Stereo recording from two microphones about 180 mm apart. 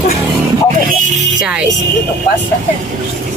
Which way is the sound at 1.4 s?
5° right (ahead or behind).